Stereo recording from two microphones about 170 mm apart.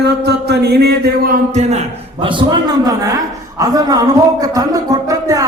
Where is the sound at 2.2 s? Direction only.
30° right (ahead or behind).